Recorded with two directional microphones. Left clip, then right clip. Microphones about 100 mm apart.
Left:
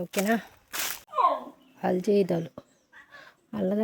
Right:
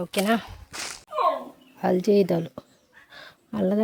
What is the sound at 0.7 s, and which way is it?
Whip, 15° left (ahead or behind).